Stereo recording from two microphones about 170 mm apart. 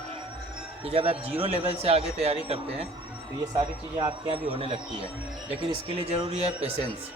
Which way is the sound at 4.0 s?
35° right (ahead or behind).